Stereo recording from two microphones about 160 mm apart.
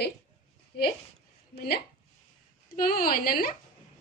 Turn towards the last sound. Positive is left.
turn(degrees=65)  # may be behind; listen again after turning